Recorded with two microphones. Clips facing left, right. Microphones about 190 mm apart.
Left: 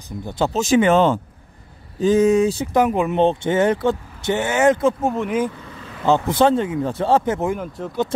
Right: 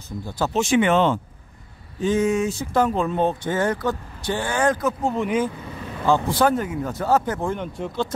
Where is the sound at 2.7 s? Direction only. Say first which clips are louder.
Even; 15° left (ahead or behind).